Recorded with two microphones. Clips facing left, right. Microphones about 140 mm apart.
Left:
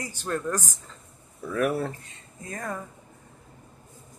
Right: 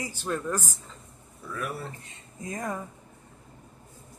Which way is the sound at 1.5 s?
65° left (ahead or behind).